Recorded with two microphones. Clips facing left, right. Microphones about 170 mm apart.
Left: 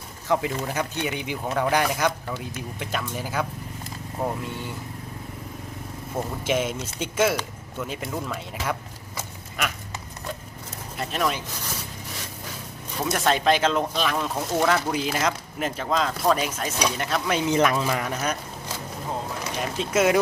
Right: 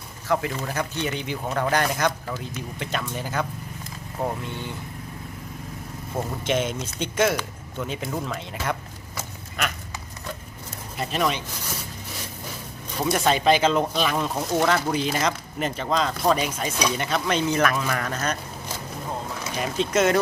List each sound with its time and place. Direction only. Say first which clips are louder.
0.3 s speech: left 1 dB; 15° left (ahead or behind)
6.1 s speech: even; 5° left (ahead or behind)
10.9 s speech: right 1 dB; centre (ahead or behind)
13.0 s speech: right 1 dB; centre (ahead or behind)
17.5 s speech: left 2 dB; 20° left (ahead or behind)
19.5 s speech: right 1 dB; 5° left (ahead or behind)